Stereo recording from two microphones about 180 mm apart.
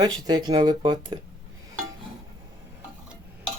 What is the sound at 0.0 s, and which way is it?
Speech, 20° right (ahead or behind).